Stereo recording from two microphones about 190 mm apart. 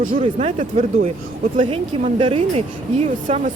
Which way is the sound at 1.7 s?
30° right (ahead or behind).